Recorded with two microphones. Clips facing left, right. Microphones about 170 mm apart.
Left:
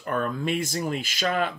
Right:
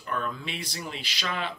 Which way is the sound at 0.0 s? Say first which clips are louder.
Left 6 dB; 50° left (ahead or behind).